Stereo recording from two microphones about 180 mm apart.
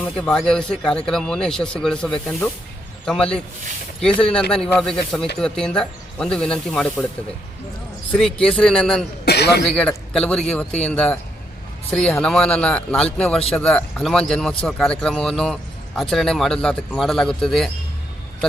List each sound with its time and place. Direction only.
0.0 s speech: 5° left (ahead or behind)
3.1 s speech: 5° left (ahead or behind)
8.4 s speech: 5° left (ahead or behind)
9.2 s a sound: 65° left (ahead or behind)
9.6 s speech: 5° left (ahead or behind)